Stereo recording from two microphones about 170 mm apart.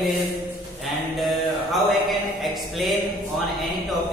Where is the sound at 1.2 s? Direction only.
Centre (ahead or behind).